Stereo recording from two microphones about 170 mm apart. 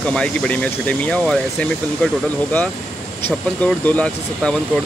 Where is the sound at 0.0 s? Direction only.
5° left (ahead or behind).